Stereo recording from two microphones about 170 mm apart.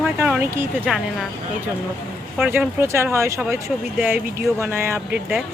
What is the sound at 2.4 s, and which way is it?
Speech, 10° right (ahead or behind).